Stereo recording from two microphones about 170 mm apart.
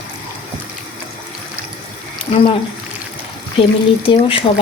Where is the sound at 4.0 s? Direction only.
30° left (ahead or behind).